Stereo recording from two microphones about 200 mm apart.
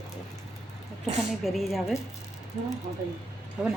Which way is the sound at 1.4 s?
Centre (ahead or behind).